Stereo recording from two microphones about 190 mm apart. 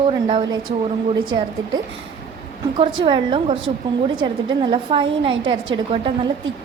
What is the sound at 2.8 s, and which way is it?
A woman's voice, 25° right (ahead or behind).